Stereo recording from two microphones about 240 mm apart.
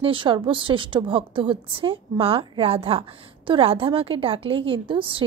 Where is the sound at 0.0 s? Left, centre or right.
Right.